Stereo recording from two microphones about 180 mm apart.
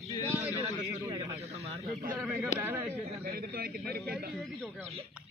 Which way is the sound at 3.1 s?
50° right (ahead or behind).